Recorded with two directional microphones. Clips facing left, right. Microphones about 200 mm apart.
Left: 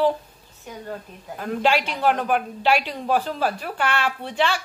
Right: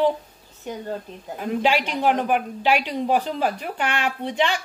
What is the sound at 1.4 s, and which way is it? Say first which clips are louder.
A woman's voice: even; 10° right (ahead or behind).